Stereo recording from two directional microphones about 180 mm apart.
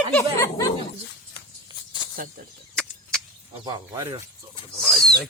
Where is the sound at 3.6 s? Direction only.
20° right (ahead or behind).